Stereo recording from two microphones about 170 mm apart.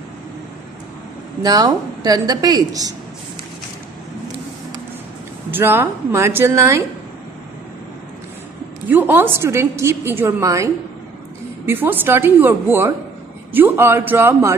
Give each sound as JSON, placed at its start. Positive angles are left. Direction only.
{"t": 1.4, "sound": "a woman's voice", "side_deg": -25}
{"t": 5.5, "sound": "a woman's voice", "side_deg": -15}
{"t": 8.8, "sound": "a woman's voice", "side_deg": -10}